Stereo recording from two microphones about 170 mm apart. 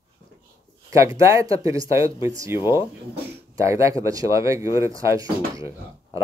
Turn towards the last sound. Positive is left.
turn(degrees=-15)  # may be behind; listen again after turning